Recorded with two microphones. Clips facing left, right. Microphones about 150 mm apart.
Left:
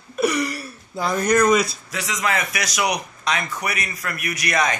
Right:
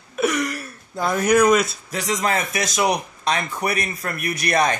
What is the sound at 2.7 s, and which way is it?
Speech, 30° right (ahead or behind).